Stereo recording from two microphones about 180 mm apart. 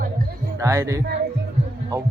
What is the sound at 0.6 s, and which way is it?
Speech, 15° right (ahead or behind).